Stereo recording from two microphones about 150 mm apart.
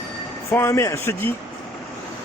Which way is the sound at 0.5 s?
20° left (ahead or behind).